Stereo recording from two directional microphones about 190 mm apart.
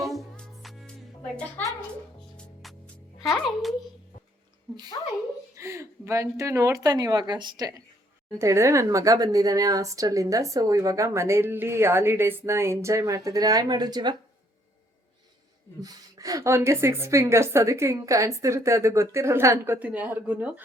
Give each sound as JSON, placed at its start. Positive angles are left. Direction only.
{"t": 0.0, "sound": "music", "side_deg": 0}
{"t": 1.4, "sound": "a woman's voice", "side_deg": 10}
{"t": 2.3, "sound": "music", "side_deg": 0}
{"t": 5.5, "sound": "speech", "side_deg": -15}
{"t": 15.8, "sound": "speech", "side_deg": -20}